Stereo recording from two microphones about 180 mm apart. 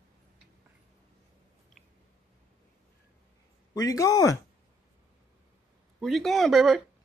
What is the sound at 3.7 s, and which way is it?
Speech, 20° left (ahead or behind).